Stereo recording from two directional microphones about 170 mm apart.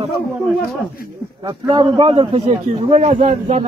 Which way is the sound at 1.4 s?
30° right (ahead or behind).